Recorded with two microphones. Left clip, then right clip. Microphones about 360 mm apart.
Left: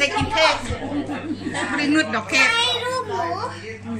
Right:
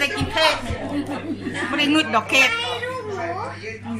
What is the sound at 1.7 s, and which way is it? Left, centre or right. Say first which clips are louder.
Speech: right 2 dB; centre.